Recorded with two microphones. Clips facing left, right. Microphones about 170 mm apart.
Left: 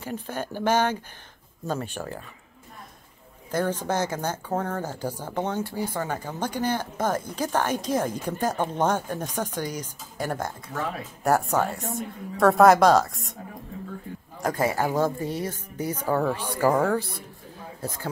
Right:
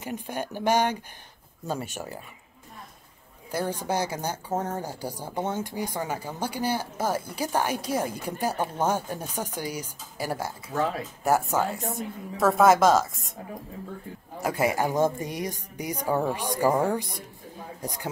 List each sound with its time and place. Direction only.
0.0 s speech: 15° right (ahead or behind)
3.5 s speech: 10° right (ahead or behind)
14.4 s speech: 15° right (ahead or behind)